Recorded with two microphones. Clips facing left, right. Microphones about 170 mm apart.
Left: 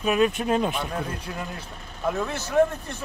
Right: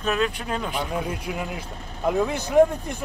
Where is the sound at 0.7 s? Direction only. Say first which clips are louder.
Right 2 dB; 15° right (ahead or behind).